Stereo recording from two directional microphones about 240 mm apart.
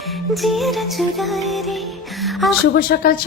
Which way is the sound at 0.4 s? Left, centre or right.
Centre.